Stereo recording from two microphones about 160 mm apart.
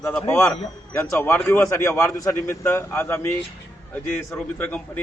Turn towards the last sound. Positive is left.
turn(degrees=10)  # may be behind; listen again after turning